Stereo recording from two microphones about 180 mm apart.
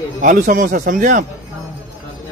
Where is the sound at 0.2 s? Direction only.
50° right (ahead or behind).